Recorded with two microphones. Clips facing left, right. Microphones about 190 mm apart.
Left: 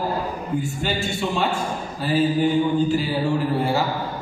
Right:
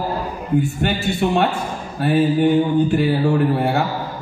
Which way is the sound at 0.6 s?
60° right (ahead or behind).